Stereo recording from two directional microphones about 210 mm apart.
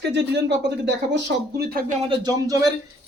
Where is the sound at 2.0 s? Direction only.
15° right (ahead or behind).